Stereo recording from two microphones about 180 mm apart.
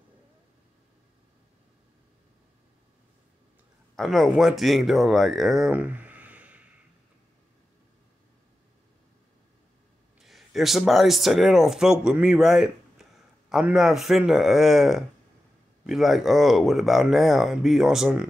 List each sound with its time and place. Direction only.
3.9 s speech: centre (ahead or behind)
10.2 s speech: centre (ahead or behind)